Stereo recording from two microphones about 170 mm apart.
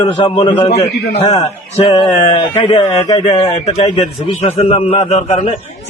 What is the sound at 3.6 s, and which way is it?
A man's voice, 40° left (ahead or behind).